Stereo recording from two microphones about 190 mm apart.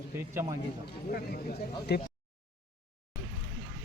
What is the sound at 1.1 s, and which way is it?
Speech, 55° left (ahead or behind).